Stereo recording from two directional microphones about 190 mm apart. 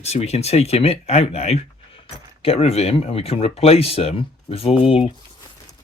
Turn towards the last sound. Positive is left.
turn(degrees=30)  # may be behind; listen again after turning